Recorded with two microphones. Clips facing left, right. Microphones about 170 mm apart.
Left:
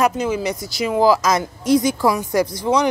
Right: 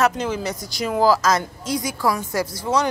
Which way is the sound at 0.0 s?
10° left (ahead or behind).